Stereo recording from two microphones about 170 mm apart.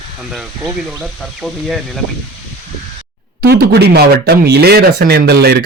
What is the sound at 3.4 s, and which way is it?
Speech, 70° right (ahead or behind).